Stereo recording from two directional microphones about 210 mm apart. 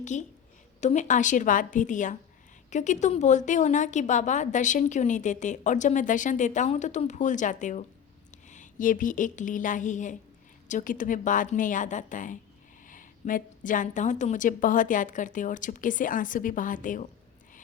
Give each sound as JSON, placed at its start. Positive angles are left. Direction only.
{"t": 0.0, "sound": "a woman's voice", "side_deg": 35}